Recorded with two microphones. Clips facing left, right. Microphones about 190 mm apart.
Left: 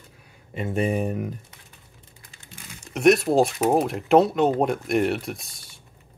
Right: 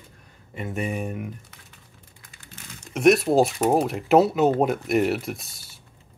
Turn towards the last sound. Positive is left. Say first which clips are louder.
# right 1 dB
turn(degrees=0)  # may be behind; listen again after turning